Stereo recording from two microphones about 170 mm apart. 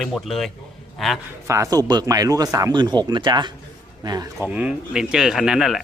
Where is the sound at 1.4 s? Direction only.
15° right (ahead or behind).